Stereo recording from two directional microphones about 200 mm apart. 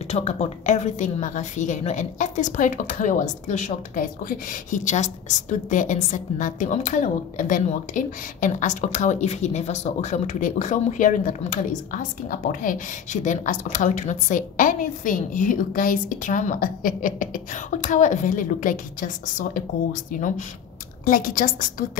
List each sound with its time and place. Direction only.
0.1 s a woman's voice: 35° left (ahead or behind)